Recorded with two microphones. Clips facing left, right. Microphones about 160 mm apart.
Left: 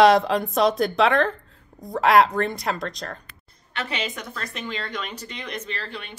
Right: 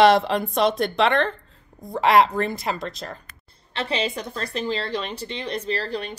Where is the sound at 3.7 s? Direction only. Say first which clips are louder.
Right 4 dB; 30° right (ahead or behind).